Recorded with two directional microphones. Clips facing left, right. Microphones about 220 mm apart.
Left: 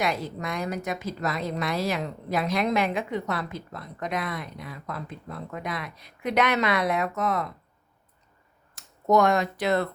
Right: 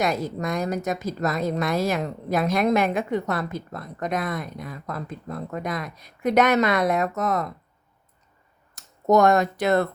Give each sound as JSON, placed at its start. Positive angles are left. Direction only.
{"t": 0.0, "sound": "a woman's voice", "side_deg": -45}
{"t": 8.7, "sound": "speech", "side_deg": -45}